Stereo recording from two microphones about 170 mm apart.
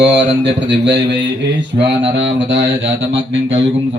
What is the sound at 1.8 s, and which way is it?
Speech, 30° right (ahead or behind).